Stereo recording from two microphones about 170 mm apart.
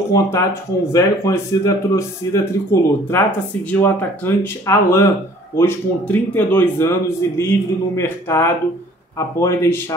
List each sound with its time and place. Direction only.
0.1 s speech: 15° left (ahead or behind)